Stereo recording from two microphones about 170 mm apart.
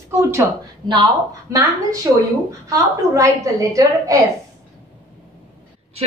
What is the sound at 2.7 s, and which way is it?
A woman's voice, 20° right (ahead or behind).